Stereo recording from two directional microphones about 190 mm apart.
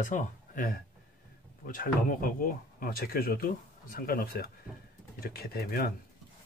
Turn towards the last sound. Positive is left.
turn(degrees=50)  # may be behind; listen again after turning